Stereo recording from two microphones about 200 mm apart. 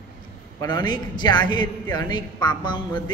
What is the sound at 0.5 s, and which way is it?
A man's voice, 20° left (ahead or behind).